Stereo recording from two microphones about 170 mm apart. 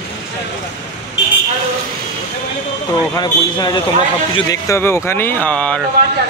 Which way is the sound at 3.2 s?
25° left (ahead or behind).